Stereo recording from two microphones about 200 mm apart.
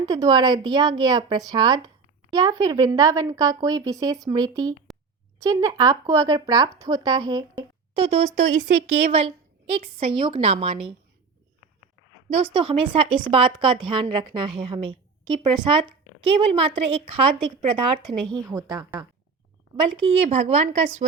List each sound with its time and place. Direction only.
0.0 s a woman's voice: 20° right (ahead or behind)
8.4 s a woman's voice: 35° right (ahead or behind)
12.3 s a woman's voice: 25° right (ahead or behind)
19.7 s speech: 30° right (ahead or behind)